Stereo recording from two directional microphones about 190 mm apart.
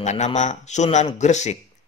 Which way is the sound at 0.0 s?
40° left (ahead or behind).